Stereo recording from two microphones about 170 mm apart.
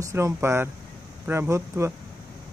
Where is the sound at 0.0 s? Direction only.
15° right (ahead or behind).